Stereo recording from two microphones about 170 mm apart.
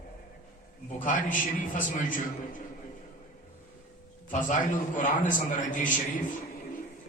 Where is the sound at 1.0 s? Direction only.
50° left (ahead or behind).